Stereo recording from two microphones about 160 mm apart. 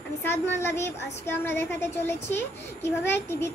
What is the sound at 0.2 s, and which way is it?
A child's voice, 15° left (ahead or behind).